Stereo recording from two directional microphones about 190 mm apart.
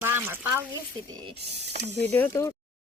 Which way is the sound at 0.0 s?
10° right (ahead or behind).